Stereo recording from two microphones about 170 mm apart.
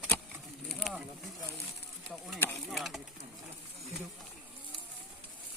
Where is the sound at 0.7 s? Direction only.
Centre (ahead or behind).